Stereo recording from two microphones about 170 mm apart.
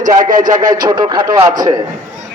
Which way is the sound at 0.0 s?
50° right (ahead or behind).